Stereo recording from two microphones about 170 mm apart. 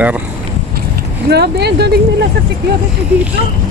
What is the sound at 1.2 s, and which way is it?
Speech, 70° right (ahead or behind).